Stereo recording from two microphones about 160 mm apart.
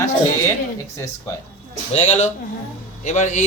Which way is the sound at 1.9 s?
45° left (ahead or behind).